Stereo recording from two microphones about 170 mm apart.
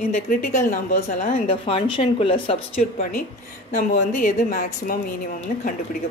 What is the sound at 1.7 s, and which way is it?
Speech, 35° left (ahead or behind).